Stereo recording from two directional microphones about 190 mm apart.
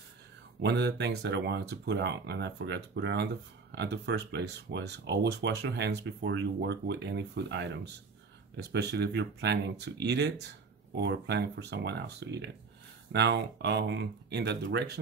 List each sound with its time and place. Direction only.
0.6 s speech: 60° right (ahead or behind)
8.9 s speech: 60° right (ahead or behind)